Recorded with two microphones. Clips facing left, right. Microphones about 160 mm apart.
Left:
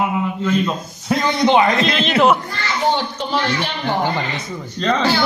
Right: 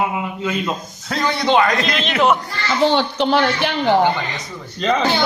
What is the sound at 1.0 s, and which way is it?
Speech, 20° left (ahead or behind).